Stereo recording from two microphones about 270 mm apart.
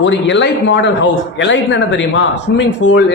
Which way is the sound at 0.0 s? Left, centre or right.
Left.